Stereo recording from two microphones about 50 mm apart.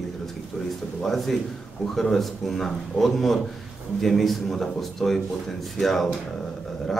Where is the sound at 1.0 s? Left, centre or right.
Centre.